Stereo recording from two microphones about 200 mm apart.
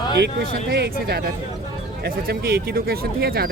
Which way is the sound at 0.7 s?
50° right (ahead or behind).